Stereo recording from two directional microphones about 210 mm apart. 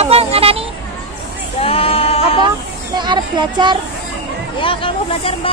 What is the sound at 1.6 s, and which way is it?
Sheep, 25° left (ahead or behind).